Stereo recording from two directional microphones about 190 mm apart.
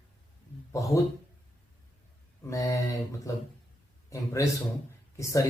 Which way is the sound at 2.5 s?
15° left (ahead or behind).